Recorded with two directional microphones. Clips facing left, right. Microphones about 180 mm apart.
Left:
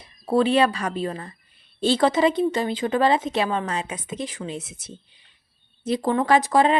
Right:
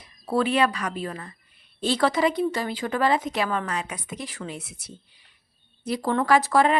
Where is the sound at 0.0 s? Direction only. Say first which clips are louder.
Left 4 dB; 25° left (ahead or behind).